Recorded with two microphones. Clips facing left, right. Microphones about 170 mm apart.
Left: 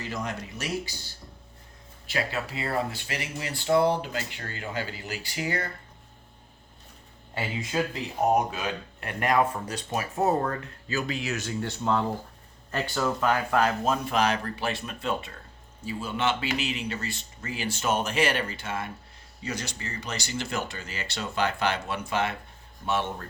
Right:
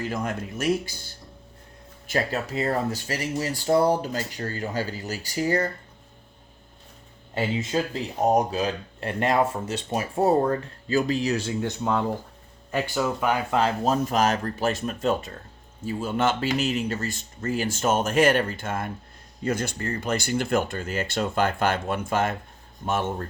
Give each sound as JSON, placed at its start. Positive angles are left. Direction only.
{"t": 0.0, "sound": "speech", "side_deg": -50}
{"t": 7.7, "sound": "speech", "side_deg": -30}
{"t": 11.6, "sound": "speech", "side_deg": -15}
{"t": 13.8, "sound": "speech", "side_deg": -40}